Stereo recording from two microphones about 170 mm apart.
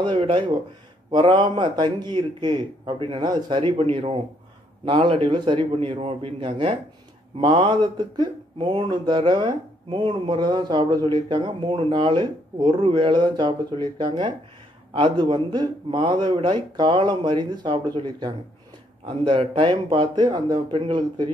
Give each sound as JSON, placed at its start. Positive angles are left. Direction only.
{"t": 0.0, "sound": "a man's voice", "side_deg": -30}